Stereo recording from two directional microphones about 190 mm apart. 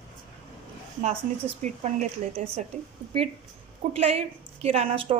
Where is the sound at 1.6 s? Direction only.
40° right (ahead or behind).